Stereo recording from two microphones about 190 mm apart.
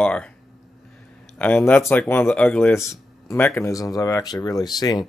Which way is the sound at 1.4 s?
10° left (ahead or behind).